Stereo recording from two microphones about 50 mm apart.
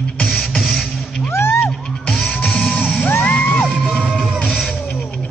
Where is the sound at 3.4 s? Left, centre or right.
Centre.